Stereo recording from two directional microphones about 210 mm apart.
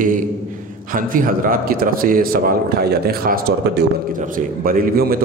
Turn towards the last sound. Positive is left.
turn(degrees=-40)  # may be behind; listen again after turning